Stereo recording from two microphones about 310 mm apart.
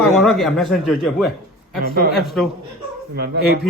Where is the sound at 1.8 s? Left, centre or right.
Right.